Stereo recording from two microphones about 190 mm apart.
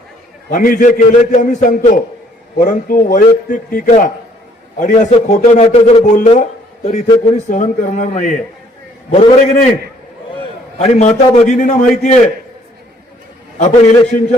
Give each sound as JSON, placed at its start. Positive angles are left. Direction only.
{"t": 0.5, "sound": "a man's voice", "side_deg": 45}
{"t": 10.8, "sound": "a man's voice", "side_deg": 35}
{"t": 13.6, "sound": "a man's voice", "side_deg": 40}